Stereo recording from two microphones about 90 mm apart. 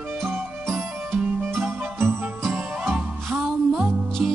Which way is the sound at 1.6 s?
25° right (ahead or behind).